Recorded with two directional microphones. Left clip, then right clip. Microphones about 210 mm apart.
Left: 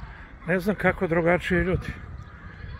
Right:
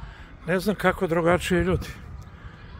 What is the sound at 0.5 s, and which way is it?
Speech, 15° right (ahead or behind).